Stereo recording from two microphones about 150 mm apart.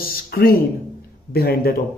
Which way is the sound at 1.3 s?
90° left.